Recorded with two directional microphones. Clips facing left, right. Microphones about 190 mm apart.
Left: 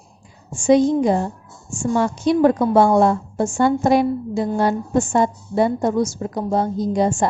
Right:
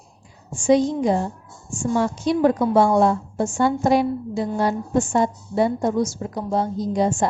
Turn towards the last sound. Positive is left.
turn(degrees=55)  # may be behind; listen again after turning